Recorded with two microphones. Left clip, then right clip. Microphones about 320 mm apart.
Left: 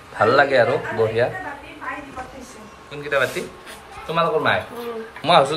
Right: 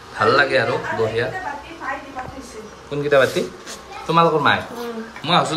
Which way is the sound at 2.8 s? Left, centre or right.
Centre.